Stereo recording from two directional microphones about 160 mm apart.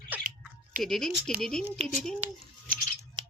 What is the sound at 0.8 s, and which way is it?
Child singing, centre (ahead or behind).